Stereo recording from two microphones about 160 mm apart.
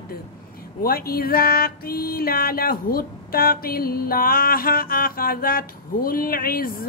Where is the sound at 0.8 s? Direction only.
70° left (ahead or behind).